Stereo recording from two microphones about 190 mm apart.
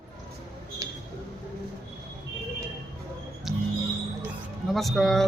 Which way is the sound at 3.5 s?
Centre (ahead or behind).